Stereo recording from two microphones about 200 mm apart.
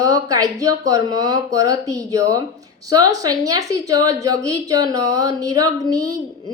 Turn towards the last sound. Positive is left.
turn(degrees=-20)  # may be behind; listen again after turning